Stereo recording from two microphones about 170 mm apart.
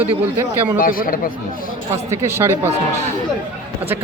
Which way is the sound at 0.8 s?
55° left (ahead or behind).